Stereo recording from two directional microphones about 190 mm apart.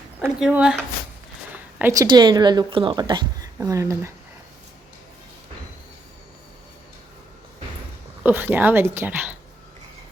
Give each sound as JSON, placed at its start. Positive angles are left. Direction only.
{"t": 0.2, "sound": "speech", "side_deg": -5}
{"t": 1.8, "sound": "speech", "side_deg": -20}
{"t": 8.2, "sound": "a woman's voice", "side_deg": -10}